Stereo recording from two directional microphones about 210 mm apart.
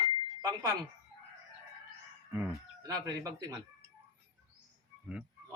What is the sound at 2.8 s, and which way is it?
Speech, 20° right (ahead or behind).